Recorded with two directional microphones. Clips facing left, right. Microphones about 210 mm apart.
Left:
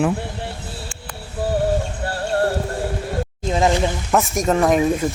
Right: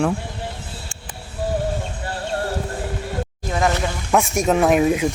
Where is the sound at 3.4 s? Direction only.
20° left (ahead or behind).